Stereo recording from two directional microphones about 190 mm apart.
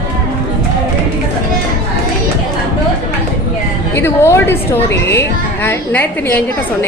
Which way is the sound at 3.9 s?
10° left (ahead or behind).